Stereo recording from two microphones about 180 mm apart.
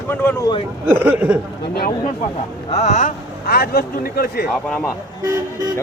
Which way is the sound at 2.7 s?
40° left (ahead or behind).